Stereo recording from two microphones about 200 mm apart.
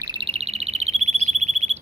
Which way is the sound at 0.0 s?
25° right (ahead or behind).